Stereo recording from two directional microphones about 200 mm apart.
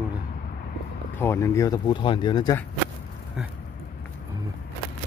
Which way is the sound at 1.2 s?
15° left (ahead or behind).